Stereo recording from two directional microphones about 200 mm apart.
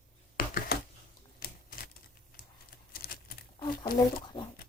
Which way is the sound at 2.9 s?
50° left (ahead or behind).